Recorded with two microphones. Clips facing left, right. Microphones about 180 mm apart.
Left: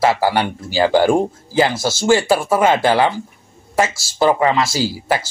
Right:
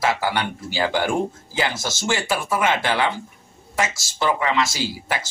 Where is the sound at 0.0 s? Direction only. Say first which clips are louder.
Left 6 dB; 35° left (ahead or behind).